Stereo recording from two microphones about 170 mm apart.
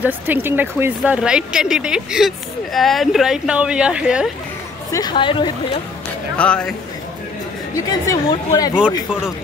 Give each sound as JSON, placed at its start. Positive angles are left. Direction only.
{"t": 0.0, "sound": "speech", "side_deg": -10}
{"t": 4.9, "sound": "speech", "side_deg": 25}
{"t": 6.3, "sound": "speech", "side_deg": 5}
{"t": 8.1, "sound": "speech", "side_deg": 20}